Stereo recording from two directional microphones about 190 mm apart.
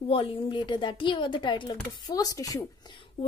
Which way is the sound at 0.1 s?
30° left (ahead or behind).